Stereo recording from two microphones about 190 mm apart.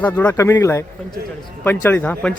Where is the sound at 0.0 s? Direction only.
10° left (ahead or behind).